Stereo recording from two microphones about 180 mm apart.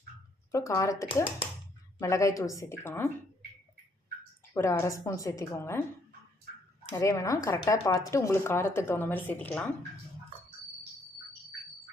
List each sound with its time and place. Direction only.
0.5 s a woman's voice: 15° left (ahead or behind)
4.5 s a woman's voice: 15° left (ahead or behind)
6.9 s a woman's voice: 15° left (ahead or behind)